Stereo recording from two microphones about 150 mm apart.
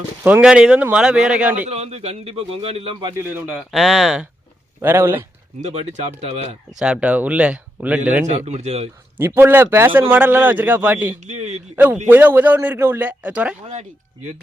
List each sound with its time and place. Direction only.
0.2 s a man's voice: 15° right (ahead or behind)
1.6 s a man's voice: 45° right (ahead or behind)
3.0 s a man's voice: 25° right (ahead or behind)
3.3 s speech: centre (ahead or behind)
4.8 s a man's voice: 15° right (ahead or behind)
5.5 s a man's voice: 50° right (ahead or behind)
6.7 s a man's voice: 5° right (ahead or behind)
8.4 s a man's voice: 50° right (ahead or behind)
9.1 s a man's voice: 15° right (ahead or behind)
11.2 s a man's voice: 50° right (ahead or behind)
12.0 s a man's voice: 15° right (ahead or behind)